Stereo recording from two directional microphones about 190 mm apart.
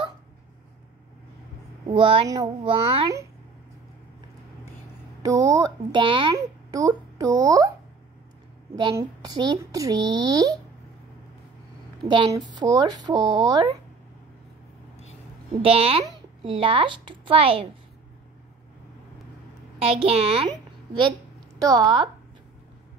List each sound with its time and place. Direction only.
1.9 s a child's voice: 25° right (ahead or behind)
5.2 s a child's voice: 20° right (ahead or behind)
8.9 s a child's voice: 20° right (ahead or behind)
12.1 s a child's voice: 20° right (ahead or behind)
15.6 s a child's voice: 30° right (ahead or behind)
19.8 s a woman's voice: 30° right (ahead or behind)